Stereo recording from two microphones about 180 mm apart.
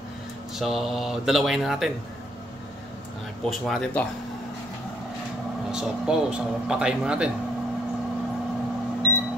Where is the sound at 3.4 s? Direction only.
Centre (ahead or behind).